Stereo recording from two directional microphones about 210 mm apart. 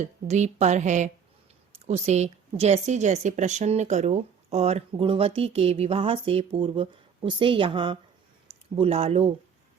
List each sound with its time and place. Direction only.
0.0 s a woman's voice: 35° right (ahead or behind)